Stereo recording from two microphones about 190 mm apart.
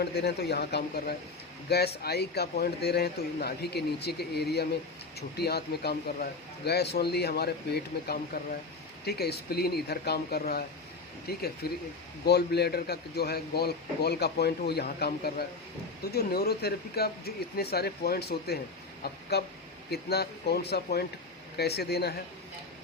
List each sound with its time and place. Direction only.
0.0 s a man's voice: 60° left (ahead or behind)